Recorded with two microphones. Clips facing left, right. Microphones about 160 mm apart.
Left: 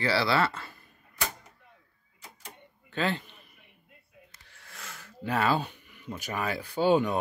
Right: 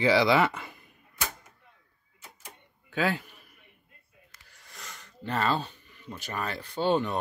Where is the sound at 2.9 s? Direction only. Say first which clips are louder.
Right 2 dB; 10° right (ahead or behind); by 7.1 s 10° left (ahead or behind).